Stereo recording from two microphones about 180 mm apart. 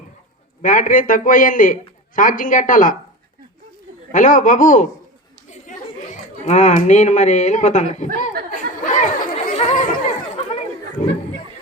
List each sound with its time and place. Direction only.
0.6 s a man's voice: 45° left (ahead or behind)
4.1 s a man's voice: 45° left (ahead or behind)
8.8 s chatter: 45° left (ahead or behind)